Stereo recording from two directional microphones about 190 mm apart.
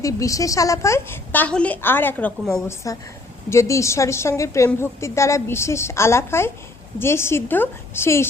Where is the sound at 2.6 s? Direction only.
15° left (ahead or behind).